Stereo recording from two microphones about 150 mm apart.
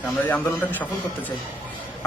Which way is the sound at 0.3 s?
10° left (ahead or behind).